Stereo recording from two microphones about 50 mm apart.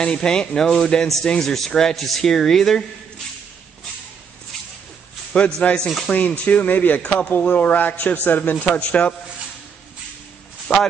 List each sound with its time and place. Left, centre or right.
0.0 s speech: centre
5.3 s a man's voice: left
8.7 s a man's voice: left
10.7 s speech: left